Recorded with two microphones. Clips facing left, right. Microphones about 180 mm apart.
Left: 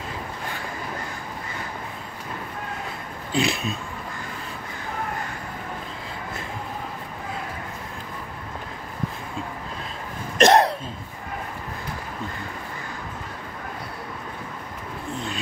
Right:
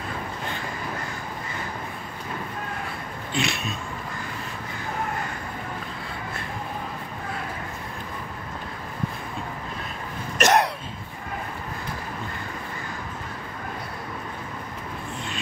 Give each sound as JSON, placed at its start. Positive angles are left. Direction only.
{"t": 3.3, "sound": "speech", "side_deg": 30}
{"t": 10.4, "sound": "hiccup", "side_deg": 30}